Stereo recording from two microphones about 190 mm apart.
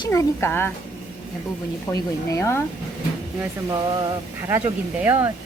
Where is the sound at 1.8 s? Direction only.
15° left (ahead or behind).